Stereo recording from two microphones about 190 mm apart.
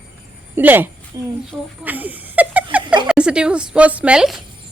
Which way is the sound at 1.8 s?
10° right (ahead or behind).